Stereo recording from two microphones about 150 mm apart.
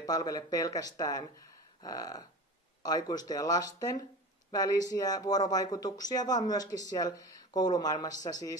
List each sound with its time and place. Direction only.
0.0 s speech: 25° left (ahead or behind)